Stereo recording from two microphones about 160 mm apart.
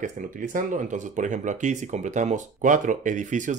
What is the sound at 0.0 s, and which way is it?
Speech, 55° right (ahead or behind).